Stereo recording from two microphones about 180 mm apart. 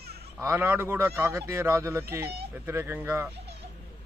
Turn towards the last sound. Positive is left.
turn(degrees=-15)  # may be behind; listen again after turning